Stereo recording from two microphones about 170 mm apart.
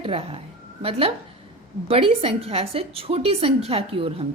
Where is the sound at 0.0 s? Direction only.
35° right (ahead or behind).